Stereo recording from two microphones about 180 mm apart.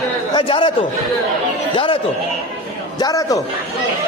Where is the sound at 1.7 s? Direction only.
30° left (ahead or behind).